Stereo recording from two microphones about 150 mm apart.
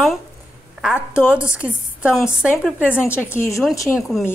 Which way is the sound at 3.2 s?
15° left (ahead or behind).